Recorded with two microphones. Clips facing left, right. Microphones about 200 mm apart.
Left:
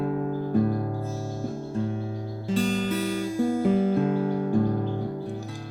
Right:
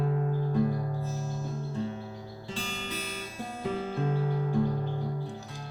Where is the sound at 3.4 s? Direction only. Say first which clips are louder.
Left 16 dB; 90° left.